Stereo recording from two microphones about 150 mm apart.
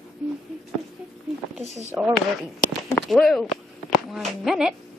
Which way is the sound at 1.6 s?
50° right (ahead or behind).